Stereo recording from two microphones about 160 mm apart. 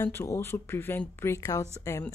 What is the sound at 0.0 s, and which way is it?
Speech, 15° left (ahead or behind).